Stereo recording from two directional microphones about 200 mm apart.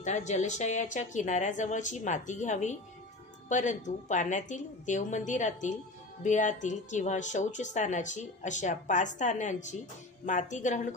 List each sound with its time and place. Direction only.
0.0 s a woman's voice: 35° left (ahead or behind)